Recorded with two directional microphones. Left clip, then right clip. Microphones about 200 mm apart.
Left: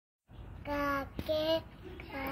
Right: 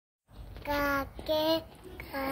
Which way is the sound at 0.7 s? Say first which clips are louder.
Right 4 dB; 20° right (ahead or behind).